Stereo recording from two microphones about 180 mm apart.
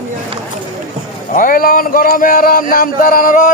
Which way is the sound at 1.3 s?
50° left (ahead or behind).